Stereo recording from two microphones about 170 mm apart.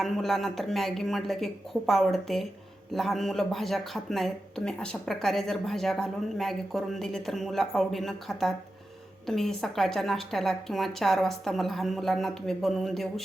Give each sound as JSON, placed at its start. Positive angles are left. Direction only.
{"t": 0.0, "sound": "speech", "side_deg": 0}